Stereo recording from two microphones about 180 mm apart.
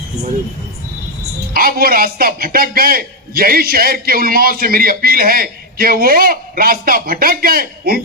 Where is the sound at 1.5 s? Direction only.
55° right (ahead or behind).